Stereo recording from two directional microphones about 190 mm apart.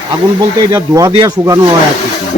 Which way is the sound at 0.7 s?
15° right (ahead or behind).